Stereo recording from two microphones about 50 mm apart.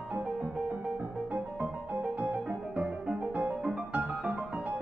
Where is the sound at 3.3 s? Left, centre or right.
Right.